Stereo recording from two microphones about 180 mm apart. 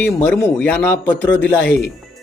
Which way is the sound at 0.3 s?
5° left (ahead or behind).